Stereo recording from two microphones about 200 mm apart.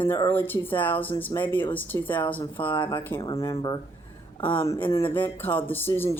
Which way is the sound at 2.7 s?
25° left (ahead or behind).